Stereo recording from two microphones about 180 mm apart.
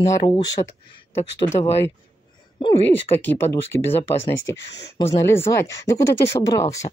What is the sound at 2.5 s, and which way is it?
Speech, 30° left (ahead or behind).